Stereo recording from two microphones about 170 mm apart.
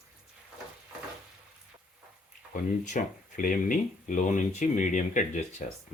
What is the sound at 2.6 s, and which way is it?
Speech, 50° left (ahead or behind).